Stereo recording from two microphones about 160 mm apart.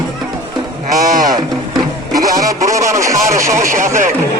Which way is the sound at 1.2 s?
25° right (ahead or behind).